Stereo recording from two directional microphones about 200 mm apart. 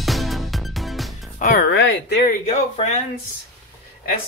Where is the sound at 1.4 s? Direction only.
45° left (ahead or behind).